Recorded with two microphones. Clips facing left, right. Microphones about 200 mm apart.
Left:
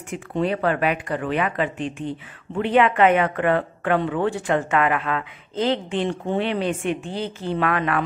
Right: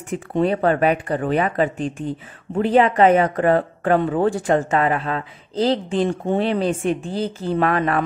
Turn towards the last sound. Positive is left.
turn(degrees=-35)  # may be behind; listen again after turning